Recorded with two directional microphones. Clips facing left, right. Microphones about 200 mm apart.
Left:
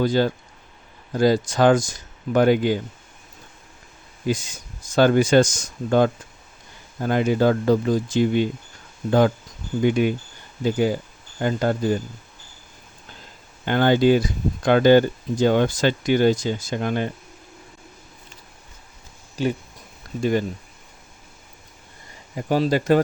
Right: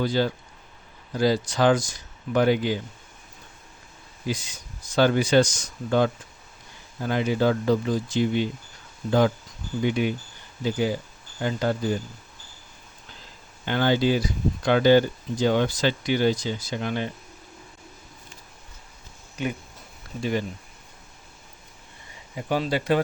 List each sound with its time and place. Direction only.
0.0 s speech: 50° left (ahead or behind)
4.3 s speech: 45° left (ahead or behind)
13.7 s speech: 50° left (ahead or behind)
19.4 s speech: 35° left (ahead or behind)
22.4 s speech: 40° left (ahead or behind)